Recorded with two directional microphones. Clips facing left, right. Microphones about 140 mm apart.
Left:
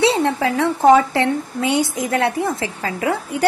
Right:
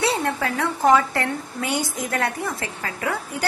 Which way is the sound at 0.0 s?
25° left (ahead or behind).